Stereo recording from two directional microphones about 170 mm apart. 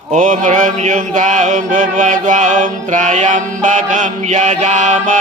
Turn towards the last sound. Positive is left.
turn(degrees=-50)  # may be behind; listen again after turning